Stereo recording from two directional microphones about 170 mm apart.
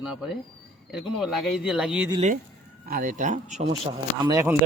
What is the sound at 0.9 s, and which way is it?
Speech, centre (ahead or behind).